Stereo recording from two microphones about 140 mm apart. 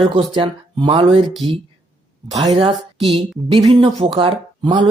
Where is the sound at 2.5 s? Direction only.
45° right (ahead or behind).